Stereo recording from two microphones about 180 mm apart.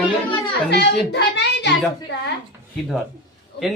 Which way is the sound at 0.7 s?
70° left (ahead or behind).